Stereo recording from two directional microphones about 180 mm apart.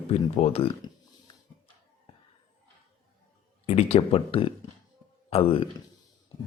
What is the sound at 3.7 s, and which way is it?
A man's voice, 35° left (ahead or behind).